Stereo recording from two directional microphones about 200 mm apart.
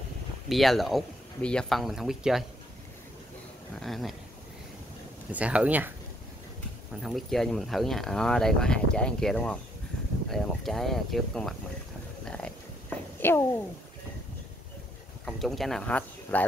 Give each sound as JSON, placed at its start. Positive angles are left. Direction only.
{"t": 0.5, "sound": "speech", "side_deg": 0}
{"t": 3.8, "sound": "speech", "side_deg": 0}
{"t": 5.3, "sound": "speech", "side_deg": -5}
{"t": 7.0, "sound": "speech", "side_deg": 0}
{"t": 13.2, "sound": "a child's voice", "side_deg": 10}
{"t": 15.2, "sound": "speech", "side_deg": 0}